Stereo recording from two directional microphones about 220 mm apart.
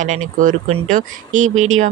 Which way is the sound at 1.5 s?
65° right (ahead or behind).